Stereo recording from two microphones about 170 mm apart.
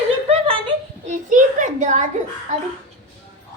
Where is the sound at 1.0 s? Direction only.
45° right (ahead or behind).